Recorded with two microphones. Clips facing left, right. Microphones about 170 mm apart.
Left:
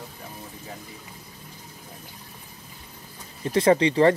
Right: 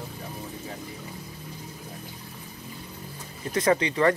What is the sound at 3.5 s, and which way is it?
Speech, 30° left (ahead or behind).